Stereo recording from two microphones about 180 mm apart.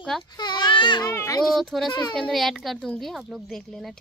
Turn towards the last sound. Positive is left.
turn(degrees=0)  # may be behind; listen again after turning